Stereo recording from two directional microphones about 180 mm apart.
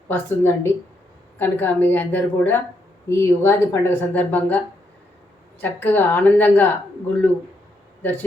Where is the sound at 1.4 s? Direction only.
10° left (ahead or behind).